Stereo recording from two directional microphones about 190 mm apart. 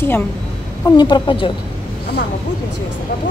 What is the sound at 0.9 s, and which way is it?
Speech, 20° left (ahead or behind).